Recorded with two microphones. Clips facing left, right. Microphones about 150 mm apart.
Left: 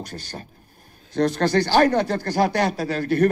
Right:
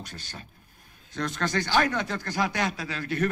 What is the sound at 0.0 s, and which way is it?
Speech, 35° left (ahead or behind).